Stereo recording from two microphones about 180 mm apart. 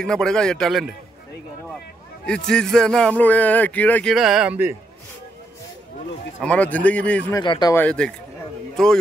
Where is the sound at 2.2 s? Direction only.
5° left (ahead or behind).